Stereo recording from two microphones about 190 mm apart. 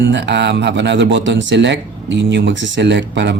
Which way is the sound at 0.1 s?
70° right (ahead or behind).